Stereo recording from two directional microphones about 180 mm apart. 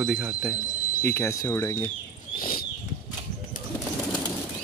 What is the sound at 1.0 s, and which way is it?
Speech, 15° left (ahead or behind).